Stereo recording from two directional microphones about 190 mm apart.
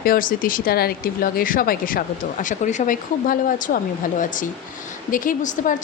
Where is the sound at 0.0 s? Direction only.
50° left (ahead or behind).